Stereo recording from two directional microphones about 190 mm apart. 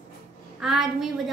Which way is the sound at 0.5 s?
Centre (ahead or behind).